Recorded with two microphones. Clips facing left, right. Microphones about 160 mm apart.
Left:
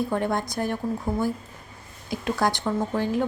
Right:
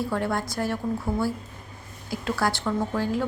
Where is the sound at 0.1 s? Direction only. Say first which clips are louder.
Left 1 dB; 20° left (ahead or behind).